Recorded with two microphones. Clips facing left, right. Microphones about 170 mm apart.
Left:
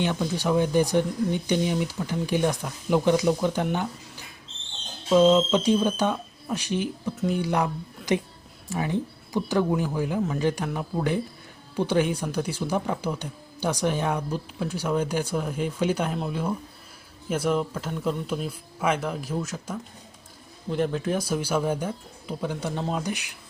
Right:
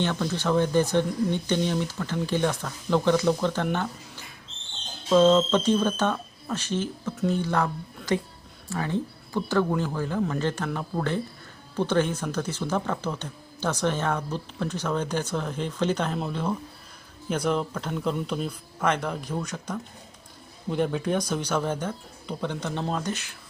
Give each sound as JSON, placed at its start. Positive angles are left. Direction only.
{"t": 0.0, "sound": "speech", "side_deg": 15}
{"t": 5.0, "sound": "speech", "side_deg": 10}